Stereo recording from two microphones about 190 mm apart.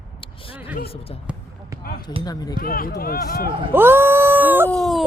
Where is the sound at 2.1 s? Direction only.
20° left (ahead or behind).